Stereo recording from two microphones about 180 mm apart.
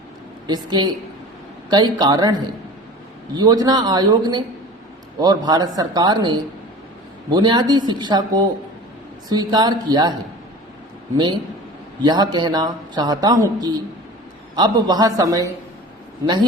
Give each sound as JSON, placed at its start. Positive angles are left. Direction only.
{"t": 0.4, "sound": "speech", "side_deg": -25}
{"t": 3.3, "sound": "speech", "side_deg": -20}
{"t": 12.0, "sound": "speech", "side_deg": -25}